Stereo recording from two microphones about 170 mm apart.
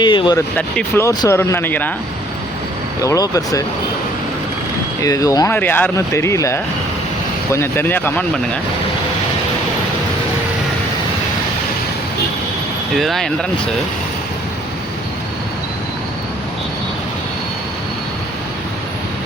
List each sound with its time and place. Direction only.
0.0 s speech: 25° left (ahead or behind)
0.5 s speech: 10° left (ahead or behind)
3.0 s speech: 20° left (ahead or behind)
5.0 s speech: 20° left (ahead or behind)
13.0 s speech: centre (ahead or behind)